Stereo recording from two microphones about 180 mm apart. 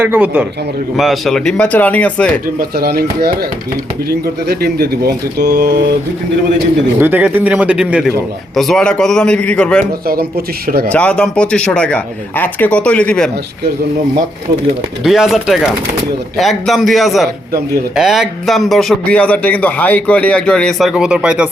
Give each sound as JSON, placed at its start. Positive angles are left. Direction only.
{"t": 0.0, "sound": "speech", "side_deg": -10}
{"t": 2.6, "sound": "speech", "side_deg": -55}
{"t": 7.0, "sound": "a man's voice", "side_deg": -10}
{"t": 9.8, "sound": "speech", "side_deg": -55}
{"t": 10.9, "sound": "speech", "side_deg": 5}
{"t": 15.0, "sound": "a man's voice", "side_deg": 0}